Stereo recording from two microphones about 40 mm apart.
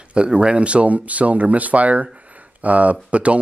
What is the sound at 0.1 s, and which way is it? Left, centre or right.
Speech, right.